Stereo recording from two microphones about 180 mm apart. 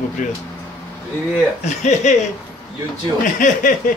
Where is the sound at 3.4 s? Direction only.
45° left (ahead or behind).